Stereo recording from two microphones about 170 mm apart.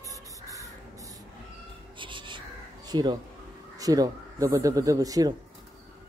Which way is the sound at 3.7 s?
20° right (ahead or behind).